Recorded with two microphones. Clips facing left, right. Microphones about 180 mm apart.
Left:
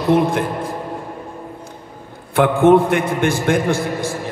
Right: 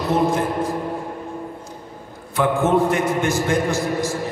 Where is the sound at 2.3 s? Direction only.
55° left (ahead or behind).